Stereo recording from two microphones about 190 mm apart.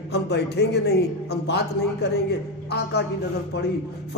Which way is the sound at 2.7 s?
60° left (ahead or behind).